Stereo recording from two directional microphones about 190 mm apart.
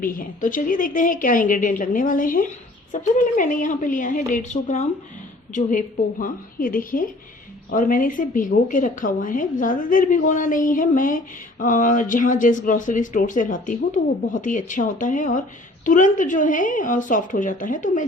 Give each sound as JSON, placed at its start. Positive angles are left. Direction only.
{"t": 0.0, "sound": "speech", "side_deg": 45}